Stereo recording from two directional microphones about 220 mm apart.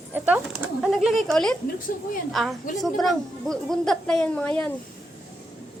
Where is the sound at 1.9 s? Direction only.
40° left (ahead or behind).